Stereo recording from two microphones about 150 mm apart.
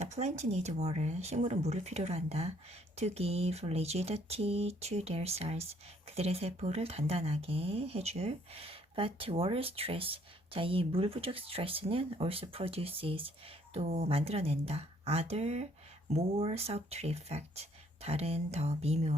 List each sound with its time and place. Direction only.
0.0 s speech: 50° right (ahead or behind)